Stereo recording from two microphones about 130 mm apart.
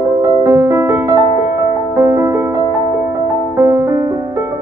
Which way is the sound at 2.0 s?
20° right (ahead or behind).